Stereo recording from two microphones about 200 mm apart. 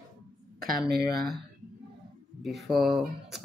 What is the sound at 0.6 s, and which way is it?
Speech, 50° right (ahead or behind).